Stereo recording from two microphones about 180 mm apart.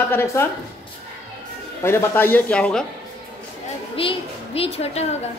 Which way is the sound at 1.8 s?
15° left (ahead or behind).